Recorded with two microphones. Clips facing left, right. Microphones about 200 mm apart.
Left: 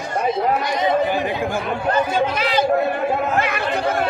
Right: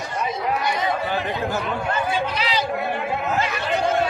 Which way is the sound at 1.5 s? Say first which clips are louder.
Left 4 dB; 45° left (ahead or behind).